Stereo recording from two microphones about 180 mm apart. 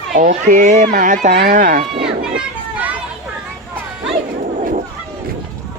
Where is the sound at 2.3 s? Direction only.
10° right (ahead or behind).